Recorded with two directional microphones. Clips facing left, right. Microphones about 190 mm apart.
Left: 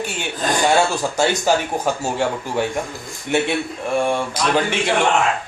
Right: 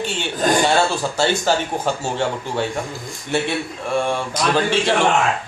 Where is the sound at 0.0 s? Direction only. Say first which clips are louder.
Right 2 dB; 10° left (ahead or behind).